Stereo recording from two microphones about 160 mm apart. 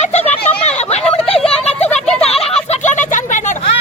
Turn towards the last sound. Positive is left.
turn(degrees=50)  # may be behind; listen again after turning